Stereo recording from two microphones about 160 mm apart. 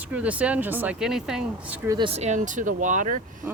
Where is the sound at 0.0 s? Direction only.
10° right (ahead or behind).